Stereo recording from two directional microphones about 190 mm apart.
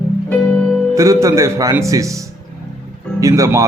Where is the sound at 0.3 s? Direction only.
5° left (ahead or behind).